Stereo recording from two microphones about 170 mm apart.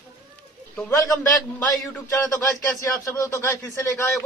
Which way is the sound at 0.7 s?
15° left (ahead or behind).